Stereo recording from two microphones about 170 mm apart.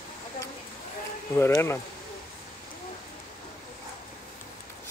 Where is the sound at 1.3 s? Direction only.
15° left (ahead or behind).